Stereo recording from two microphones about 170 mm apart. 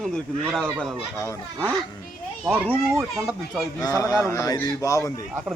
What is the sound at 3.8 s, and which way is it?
Speech, 20° left (ahead or behind).